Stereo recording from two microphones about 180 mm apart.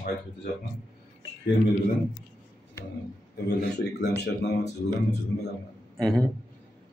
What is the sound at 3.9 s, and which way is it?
Speech, 70° left (ahead or behind).